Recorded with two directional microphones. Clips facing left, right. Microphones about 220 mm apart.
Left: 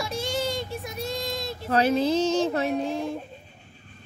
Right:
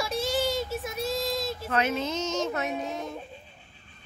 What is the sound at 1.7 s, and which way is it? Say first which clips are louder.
Speech: left 7 dB; 35° left (ahead or behind).